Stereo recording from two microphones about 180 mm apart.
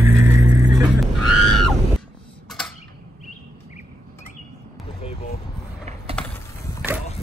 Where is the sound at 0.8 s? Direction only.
Centre (ahead or behind).